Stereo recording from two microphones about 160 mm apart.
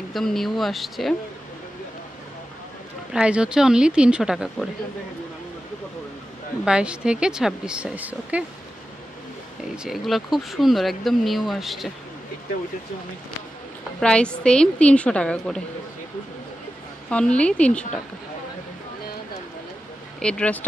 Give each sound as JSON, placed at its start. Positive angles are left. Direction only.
{"t": 0.1, "sound": "speech", "side_deg": 0}
{"t": 3.1, "sound": "speech", "side_deg": -5}
{"t": 6.6, "sound": "speech", "side_deg": -5}
{"t": 9.8, "sound": "speech", "side_deg": 0}
{"t": 13.9, "sound": "speech", "side_deg": 5}
{"t": 17.1, "sound": "a woman's voice", "side_deg": 5}
{"t": 20.2, "sound": "speech", "side_deg": 5}